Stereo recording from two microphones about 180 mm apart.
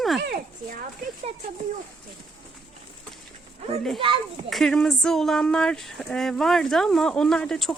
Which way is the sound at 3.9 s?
30° right (ahead or behind).